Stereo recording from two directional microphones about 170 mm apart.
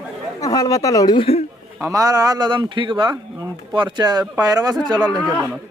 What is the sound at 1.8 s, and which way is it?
Speech, 20° right (ahead or behind).